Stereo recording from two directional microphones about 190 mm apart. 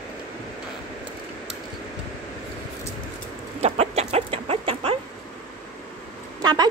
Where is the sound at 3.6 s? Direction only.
35° right (ahead or behind).